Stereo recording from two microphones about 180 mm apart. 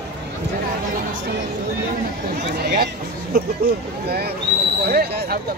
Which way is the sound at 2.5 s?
60° right (ahead or behind).